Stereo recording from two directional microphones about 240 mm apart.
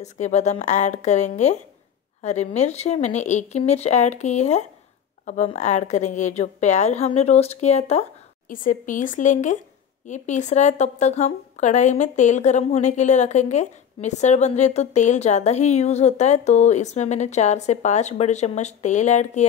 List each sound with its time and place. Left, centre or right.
0.0 s a woman's voice: left